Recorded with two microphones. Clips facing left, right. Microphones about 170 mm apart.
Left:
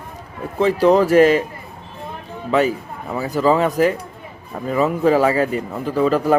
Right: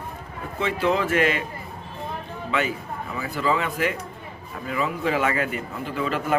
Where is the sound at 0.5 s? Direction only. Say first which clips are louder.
Left 9 dB; 40° left (ahead or behind).